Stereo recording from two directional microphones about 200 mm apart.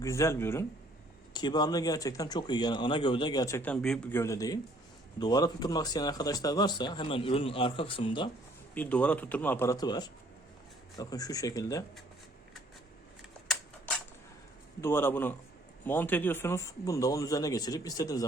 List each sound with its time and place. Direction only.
0.0 s speech: 15° left (ahead or behind)
8.7 s speech: 5° left (ahead or behind)
14.8 s speech: 10° left (ahead or behind)